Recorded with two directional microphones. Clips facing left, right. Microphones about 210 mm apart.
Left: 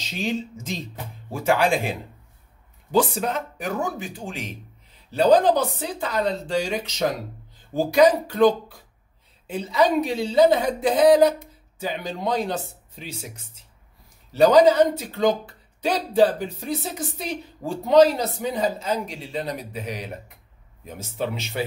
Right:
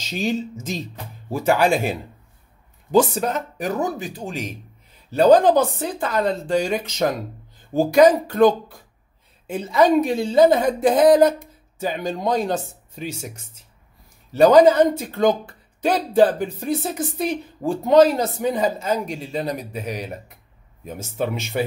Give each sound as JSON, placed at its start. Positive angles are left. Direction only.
{"t": 1.4, "sound": "a woman's voice", "side_deg": -40}
{"t": 14.3, "sound": "a woman's voice", "side_deg": -50}